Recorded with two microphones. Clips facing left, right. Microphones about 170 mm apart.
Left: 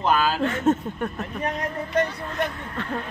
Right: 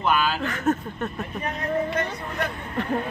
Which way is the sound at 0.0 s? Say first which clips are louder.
Left 2 dB; 40° left (ahead or behind).